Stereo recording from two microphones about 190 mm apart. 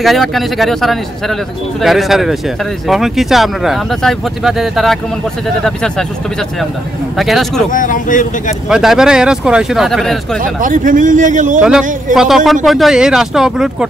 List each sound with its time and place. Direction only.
0.0 s speech: centre (ahead or behind)
7.2 s speech: centre (ahead or behind)
7.7 s speech: 45° left (ahead or behind)
8.6 s speech: 5° right (ahead or behind)
10.6 s a man's voice: 45° right (ahead or behind)
11.6 s speech: 5° right (ahead or behind)